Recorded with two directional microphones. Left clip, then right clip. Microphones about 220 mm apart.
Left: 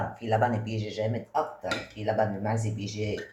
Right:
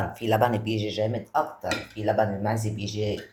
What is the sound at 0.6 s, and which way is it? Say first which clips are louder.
Speech: right 5 dB; 35° right (ahead or behind).